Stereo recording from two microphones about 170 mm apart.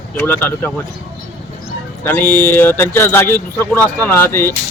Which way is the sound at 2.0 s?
10° left (ahead or behind).